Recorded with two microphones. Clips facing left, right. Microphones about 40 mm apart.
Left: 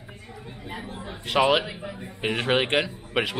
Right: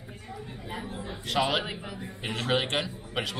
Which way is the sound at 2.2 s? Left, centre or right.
Left.